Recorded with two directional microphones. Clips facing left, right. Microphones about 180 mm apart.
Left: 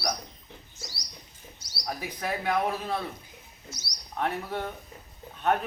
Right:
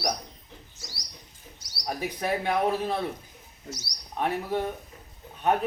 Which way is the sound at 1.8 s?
20° right (ahead or behind).